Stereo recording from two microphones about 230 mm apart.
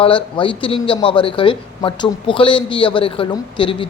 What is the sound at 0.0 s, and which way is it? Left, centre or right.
Speech, left.